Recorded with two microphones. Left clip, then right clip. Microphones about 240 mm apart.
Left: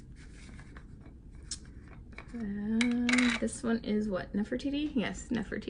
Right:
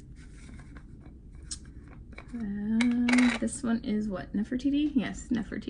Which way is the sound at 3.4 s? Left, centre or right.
Centre.